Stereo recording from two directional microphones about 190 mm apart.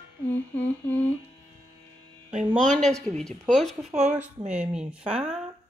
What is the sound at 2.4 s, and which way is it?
A woman's voice, centre (ahead or behind).